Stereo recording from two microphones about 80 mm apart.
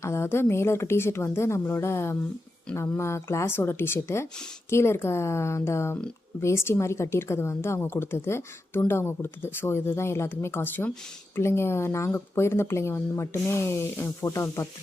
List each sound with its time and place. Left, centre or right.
0.0 s speech: left